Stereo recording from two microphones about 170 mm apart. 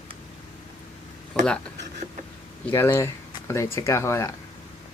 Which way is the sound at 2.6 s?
15° left (ahead or behind).